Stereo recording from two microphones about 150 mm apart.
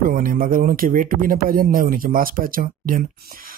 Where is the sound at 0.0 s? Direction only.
70° right (ahead or behind).